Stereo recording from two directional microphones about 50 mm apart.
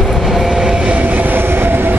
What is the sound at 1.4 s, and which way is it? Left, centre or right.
Train, right.